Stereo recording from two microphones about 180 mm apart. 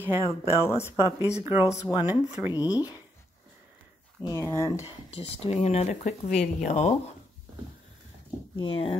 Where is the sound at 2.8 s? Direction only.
10° right (ahead or behind).